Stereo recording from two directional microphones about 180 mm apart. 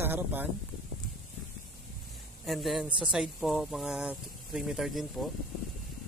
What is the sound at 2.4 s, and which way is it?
Speech, centre (ahead or behind).